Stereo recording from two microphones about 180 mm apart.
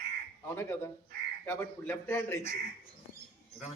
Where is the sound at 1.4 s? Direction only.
10° left (ahead or behind).